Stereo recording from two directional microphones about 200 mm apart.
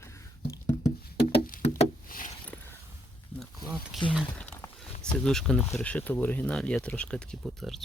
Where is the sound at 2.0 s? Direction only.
45° left (ahead or behind).